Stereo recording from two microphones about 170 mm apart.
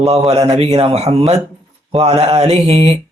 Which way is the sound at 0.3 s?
35° right (ahead or behind).